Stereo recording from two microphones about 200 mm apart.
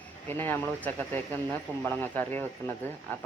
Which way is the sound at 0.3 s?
10° left (ahead or behind).